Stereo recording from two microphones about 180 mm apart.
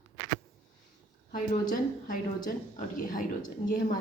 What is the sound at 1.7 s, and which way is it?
A woman's voice, 45° left (ahead or behind).